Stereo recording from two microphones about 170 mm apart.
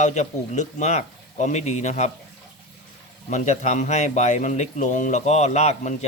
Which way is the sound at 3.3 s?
45° left (ahead or behind).